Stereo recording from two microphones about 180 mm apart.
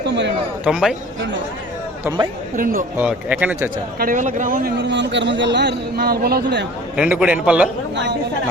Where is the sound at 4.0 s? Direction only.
50° right (ahead or behind).